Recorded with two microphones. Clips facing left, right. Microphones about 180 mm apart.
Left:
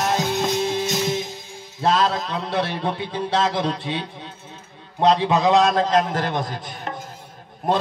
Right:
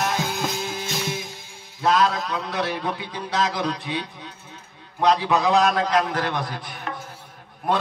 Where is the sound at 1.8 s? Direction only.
30° left (ahead or behind).